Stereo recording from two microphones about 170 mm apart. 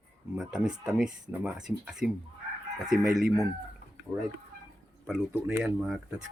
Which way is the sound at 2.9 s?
60° right (ahead or behind).